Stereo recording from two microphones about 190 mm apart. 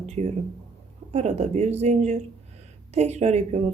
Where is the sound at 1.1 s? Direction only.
35° right (ahead or behind).